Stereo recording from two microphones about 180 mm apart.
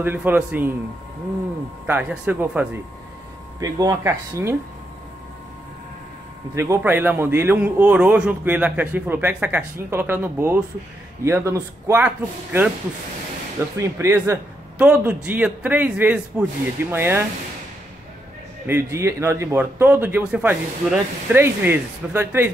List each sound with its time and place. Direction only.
0.0 s a man's voice: 10° right (ahead or behind)
1.9 s a man's voice: 10° right (ahead or behind)
3.5 s a man's voice: 20° right (ahead or behind)
6.5 s a man's voice: 15° right (ahead or behind)
13.7 s a man's voice: 15° right (ahead or behind)
18.7 s a man's voice: 15° right (ahead or behind)